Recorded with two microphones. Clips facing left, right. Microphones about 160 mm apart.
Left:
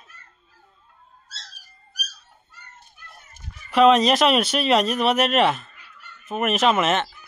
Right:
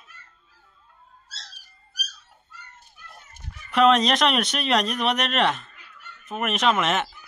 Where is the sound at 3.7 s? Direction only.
Centre (ahead or behind).